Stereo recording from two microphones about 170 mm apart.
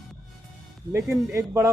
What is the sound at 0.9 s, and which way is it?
Speech, 15° right (ahead or behind).